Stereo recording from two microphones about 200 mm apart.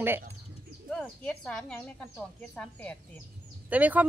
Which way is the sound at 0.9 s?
Centre (ahead or behind).